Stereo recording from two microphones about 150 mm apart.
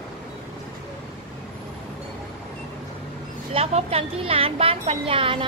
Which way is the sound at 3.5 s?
40° right (ahead or behind).